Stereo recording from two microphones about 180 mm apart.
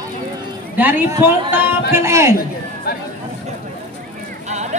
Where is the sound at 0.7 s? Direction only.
10° right (ahead or behind).